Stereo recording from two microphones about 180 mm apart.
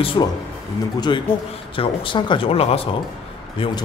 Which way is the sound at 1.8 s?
25° left (ahead or behind).